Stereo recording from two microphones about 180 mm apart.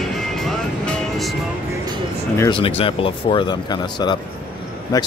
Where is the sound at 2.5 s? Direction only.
30° left (ahead or behind).